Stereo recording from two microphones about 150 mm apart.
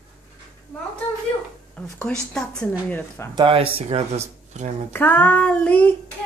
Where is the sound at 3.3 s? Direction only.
35° right (ahead or behind).